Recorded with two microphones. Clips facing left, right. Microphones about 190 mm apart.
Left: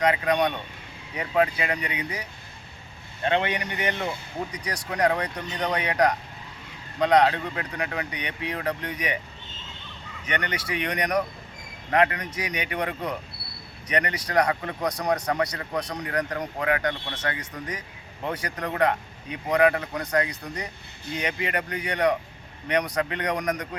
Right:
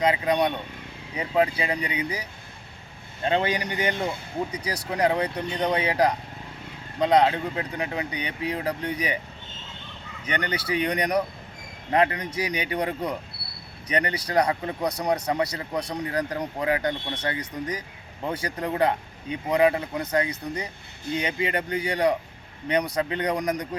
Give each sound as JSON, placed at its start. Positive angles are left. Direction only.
{"t": 0.0, "sound": "speech", "side_deg": -25}
{"t": 3.2, "sound": "speech", "side_deg": -35}
{"t": 10.2, "sound": "speech", "side_deg": -30}
{"t": 14.8, "sound": "speech", "side_deg": -10}
{"t": 15.4, "sound": "speech", "side_deg": -25}